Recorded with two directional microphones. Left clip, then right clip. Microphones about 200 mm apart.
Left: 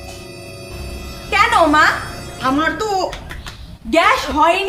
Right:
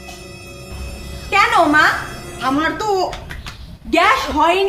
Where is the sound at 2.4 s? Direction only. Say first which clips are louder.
Left 1 dB; 15° left (ahead or behind).